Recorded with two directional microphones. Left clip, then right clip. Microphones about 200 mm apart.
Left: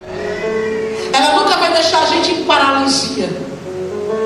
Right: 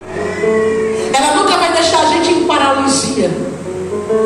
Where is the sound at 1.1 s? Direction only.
15° left (ahead or behind).